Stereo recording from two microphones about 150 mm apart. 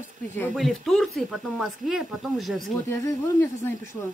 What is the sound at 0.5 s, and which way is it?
Speech, centre (ahead or behind).